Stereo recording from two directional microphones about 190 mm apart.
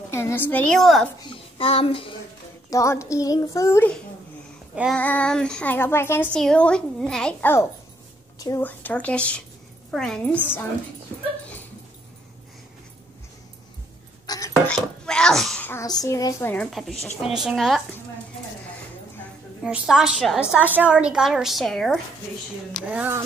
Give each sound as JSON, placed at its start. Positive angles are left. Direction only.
{"t": 0.1, "sound": "speech", "side_deg": 15}
{"t": 1.2, "sound": "a child's voice", "side_deg": 30}
{"t": 2.7, "sound": "speech", "side_deg": 15}
{"t": 4.9, "sound": "speech", "side_deg": 5}
{"t": 14.2, "sound": "dishes", "side_deg": 20}
{"t": 14.7, "sound": "a child's voice", "side_deg": 5}
{"t": 16.7, "sound": "a woman's voice", "side_deg": 0}
{"t": 19.6, "sound": "a woman's voice", "side_deg": -5}
{"t": 22.8, "sound": "a sound", "side_deg": -10}